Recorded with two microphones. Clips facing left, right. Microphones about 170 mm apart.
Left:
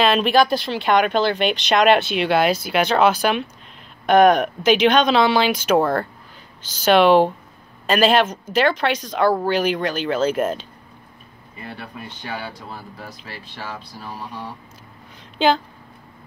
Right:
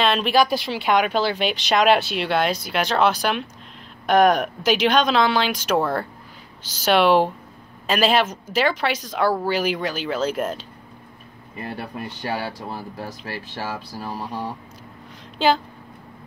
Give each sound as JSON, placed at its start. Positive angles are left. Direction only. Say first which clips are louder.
{"t": 0.0, "sound": "a man's voice", "louder": "left 2 dB", "side_deg": 0}
{"t": 12.2, "sound": "speech", "louder": "right 4 dB", "side_deg": -35}
{"t": 15.3, "sound": "speech", "louder": "left 1 dB", "side_deg": -5}